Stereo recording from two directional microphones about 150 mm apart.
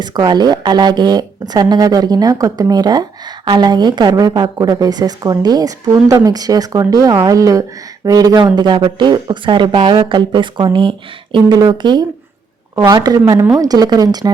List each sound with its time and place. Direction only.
0.0 s speech: 25° right (ahead or behind)